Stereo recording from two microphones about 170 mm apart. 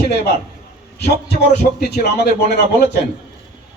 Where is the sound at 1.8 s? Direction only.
70° left (ahead or behind).